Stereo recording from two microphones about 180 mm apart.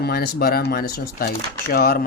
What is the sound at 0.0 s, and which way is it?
Speech, 60° left (ahead or behind).